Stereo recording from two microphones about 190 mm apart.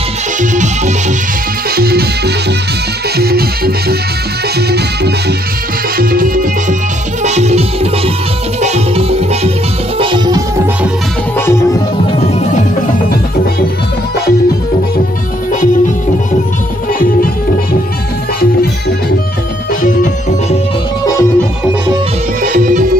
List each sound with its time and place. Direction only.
0.4 s music: 40° right (ahead or behind)
1.8 s music: 55° right (ahead or behind)
7.2 s music: 35° right (ahead or behind)
11.3 s music: 15° left (ahead or behind)
19.8 s music: 45° left (ahead or behind)
21.0 s music: 15° left (ahead or behind)
22.4 s music: 40° right (ahead or behind)